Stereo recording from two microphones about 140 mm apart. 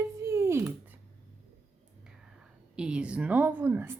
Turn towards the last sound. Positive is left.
turn(degrees=-15)  # may be behind; listen again after turning